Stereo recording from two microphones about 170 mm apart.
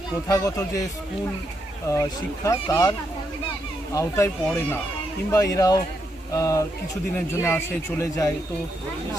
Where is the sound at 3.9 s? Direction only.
15° left (ahead or behind).